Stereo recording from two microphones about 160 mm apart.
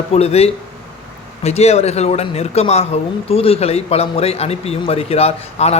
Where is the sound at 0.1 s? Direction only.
40° left (ahead or behind).